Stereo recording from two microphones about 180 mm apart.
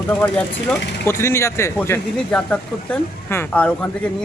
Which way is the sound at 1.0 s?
15° left (ahead or behind).